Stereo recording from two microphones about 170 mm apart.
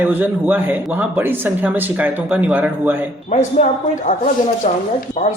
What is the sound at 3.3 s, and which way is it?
Speech, 45° left (ahead or behind).